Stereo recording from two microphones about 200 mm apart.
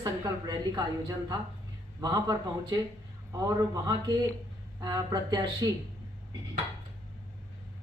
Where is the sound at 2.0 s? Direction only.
20° right (ahead or behind).